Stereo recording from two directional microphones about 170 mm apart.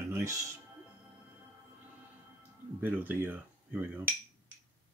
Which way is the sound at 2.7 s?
10° right (ahead or behind).